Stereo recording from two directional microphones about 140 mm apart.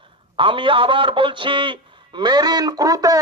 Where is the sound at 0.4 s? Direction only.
35° right (ahead or behind).